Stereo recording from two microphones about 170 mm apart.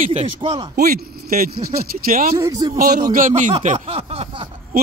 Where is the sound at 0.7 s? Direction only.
60° right (ahead or behind).